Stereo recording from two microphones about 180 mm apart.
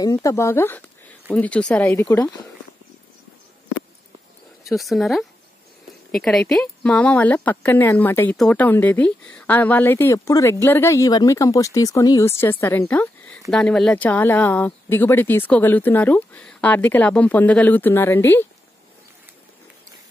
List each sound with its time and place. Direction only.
0.0 s speech: 20° left (ahead or behind)
4.6 s speech: centre (ahead or behind)